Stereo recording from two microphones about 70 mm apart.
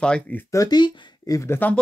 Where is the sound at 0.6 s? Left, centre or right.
Left.